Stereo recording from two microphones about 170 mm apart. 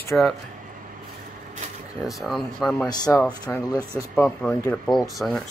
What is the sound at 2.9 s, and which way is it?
Speech, 20° left (ahead or behind).